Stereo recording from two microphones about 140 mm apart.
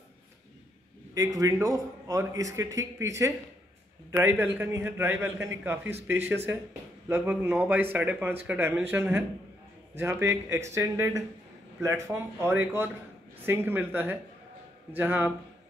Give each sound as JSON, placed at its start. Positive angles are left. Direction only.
{"t": 1.1, "sound": "a man's voice", "side_deg": -25}